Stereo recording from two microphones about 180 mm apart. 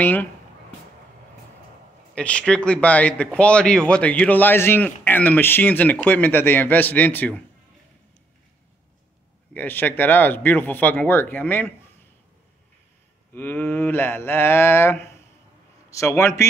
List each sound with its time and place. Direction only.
0.0 s speech: 10° left (ahead or behind)
2.1 s speech: 5° left (ahead or behind)
9.5 s speech: 10° left (ahead or behind)
13.3 s speech: 10° left (ahead or behind)